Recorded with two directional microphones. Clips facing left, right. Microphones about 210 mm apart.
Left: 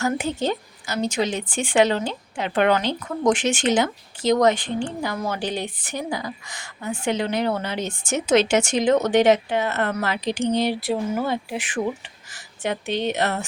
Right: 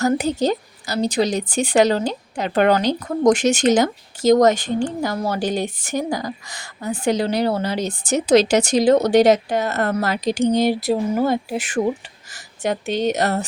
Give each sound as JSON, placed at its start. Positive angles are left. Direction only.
{"t": 0.0, "sound": "a woman's voice", "side_deg": -40}